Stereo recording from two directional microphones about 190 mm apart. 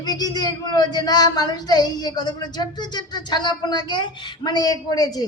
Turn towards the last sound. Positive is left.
turn(degrees=20)  # may be behind; listen again after turning